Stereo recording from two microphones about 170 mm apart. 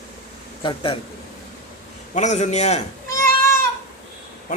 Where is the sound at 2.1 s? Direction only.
45° left (ahead or behind).